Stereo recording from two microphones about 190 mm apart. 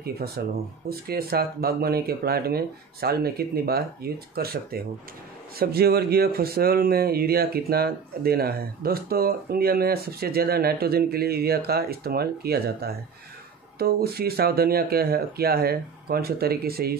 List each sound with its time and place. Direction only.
0.4 s speech: 55° right (ahead or behind)